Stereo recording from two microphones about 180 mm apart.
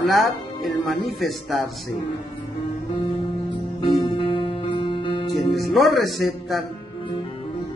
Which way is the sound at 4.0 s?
30° left (ahead or behind).